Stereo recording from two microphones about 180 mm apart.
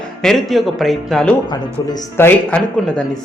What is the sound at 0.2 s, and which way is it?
Speech, centre (ahead or behind).